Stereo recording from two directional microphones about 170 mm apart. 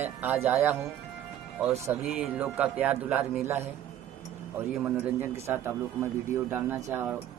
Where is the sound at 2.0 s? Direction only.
5° right (ahead or behind).